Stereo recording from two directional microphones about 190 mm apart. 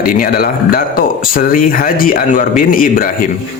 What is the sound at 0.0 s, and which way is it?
Speech, 50° left (ahead or behind).